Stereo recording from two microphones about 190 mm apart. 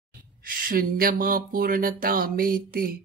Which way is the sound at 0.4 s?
50° right (ahead or behind).